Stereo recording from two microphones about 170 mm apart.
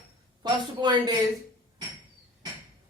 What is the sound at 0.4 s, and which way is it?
Speech, 25° right (ahead or behind).